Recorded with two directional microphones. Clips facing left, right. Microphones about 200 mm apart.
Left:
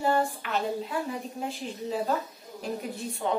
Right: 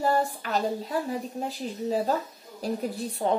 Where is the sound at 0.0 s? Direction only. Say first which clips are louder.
Right 1 dB; 40° right (ahead or behind).